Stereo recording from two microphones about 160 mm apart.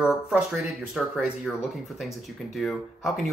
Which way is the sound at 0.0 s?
5° right (ahead or behind).